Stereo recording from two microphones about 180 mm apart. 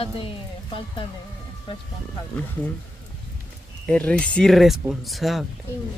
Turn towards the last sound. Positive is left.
turn(degrees=0)  # may be behind; listen again after turning